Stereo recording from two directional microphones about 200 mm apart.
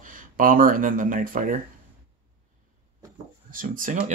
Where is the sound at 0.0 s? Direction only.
40° right (ahead or behind).